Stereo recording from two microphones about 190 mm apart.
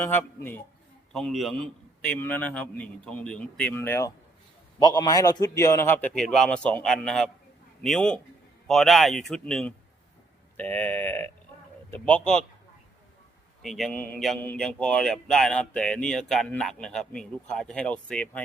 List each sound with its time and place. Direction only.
0.0 s a man's voice: 10° left (ahead or behind)
13.6 s a man's voice: centre (ahead or behind)